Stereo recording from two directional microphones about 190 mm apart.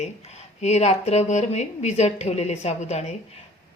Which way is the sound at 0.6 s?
35° left (ahead or behind).